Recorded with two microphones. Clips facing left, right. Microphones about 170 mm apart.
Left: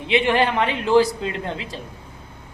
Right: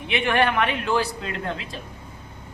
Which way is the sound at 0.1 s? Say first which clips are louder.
Left 3 dB; 25° left (ahead or behind).